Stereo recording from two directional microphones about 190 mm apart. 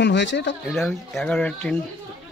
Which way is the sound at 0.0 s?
70° left (ahead or behind).